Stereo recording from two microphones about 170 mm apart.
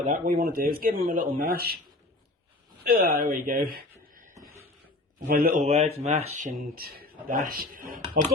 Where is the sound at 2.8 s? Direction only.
55° right (ahead or behind).